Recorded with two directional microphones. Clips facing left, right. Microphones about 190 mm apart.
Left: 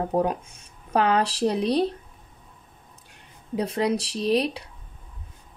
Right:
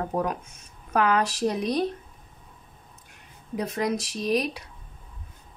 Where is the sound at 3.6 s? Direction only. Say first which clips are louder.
Left 3 dB; 30° left (ahead or behind).